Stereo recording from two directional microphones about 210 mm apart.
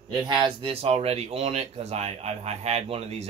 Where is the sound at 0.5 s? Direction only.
25° right (ahead or behind).